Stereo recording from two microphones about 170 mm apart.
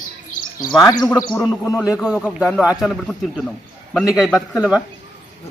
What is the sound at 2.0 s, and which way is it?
Speech, centre (ahead or behind).